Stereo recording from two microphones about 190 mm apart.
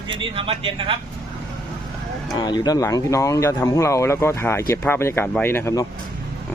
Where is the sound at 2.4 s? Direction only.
20° left (ahead or behind).